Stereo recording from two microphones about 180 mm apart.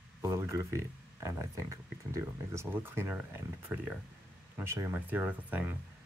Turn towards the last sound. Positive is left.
turn(degrees=-10)  # may be behind; listen again after turning